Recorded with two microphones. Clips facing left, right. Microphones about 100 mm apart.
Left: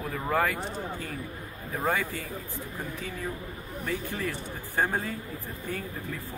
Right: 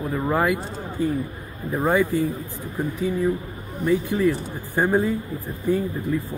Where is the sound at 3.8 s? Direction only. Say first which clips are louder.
Right 13 dB; 15° right (ahead or behind).